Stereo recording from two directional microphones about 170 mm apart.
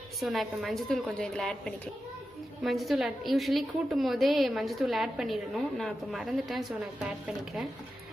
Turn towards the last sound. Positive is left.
turn(degrees=0)  # may be behind; listen again after turning